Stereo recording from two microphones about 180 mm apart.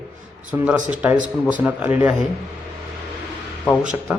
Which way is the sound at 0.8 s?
45° right (ahead or behind).